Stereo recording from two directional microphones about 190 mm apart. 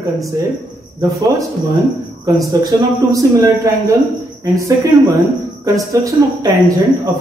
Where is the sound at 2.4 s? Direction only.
15° right (ahead or behind).